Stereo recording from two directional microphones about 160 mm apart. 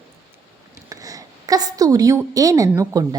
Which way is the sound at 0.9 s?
20° right (ahead or behind).